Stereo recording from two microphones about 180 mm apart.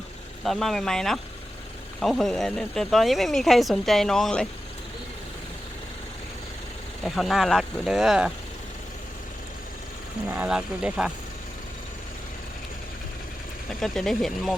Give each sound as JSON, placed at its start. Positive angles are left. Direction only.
{"t": 0.4, "sound": "speech", "side_deg": 0}
{"t": 7.0, "sound": "speech", "side_deg": 0}
{"t": 10.3, "sound": "speech", "side_deg": -5}
{"t": 13.7, "sound": "speech", "side_deg": 0}